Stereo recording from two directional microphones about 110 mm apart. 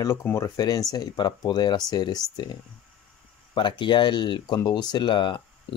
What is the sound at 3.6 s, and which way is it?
Speech, 45° left (ahead or behind).